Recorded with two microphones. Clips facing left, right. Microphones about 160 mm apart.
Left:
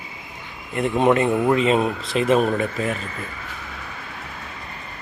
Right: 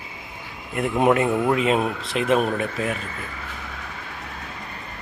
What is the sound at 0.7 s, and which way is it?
Speech, 5° right (ahead or behind).